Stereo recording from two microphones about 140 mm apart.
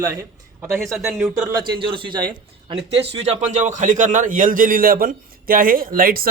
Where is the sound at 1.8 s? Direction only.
35° right (ahead or behind).